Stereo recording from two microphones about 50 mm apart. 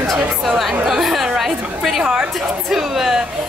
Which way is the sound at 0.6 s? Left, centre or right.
Centre.